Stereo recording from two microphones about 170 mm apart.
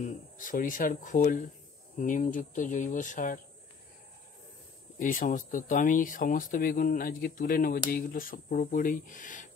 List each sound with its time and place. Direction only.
0.0 s speech: 50° left (ahead or behind)
4.9 s speech: 50° left (ahead or behind)